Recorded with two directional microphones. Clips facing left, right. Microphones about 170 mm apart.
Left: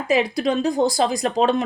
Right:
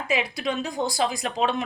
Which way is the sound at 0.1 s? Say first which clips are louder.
Left 7 dB; 35° left (ahead or behind).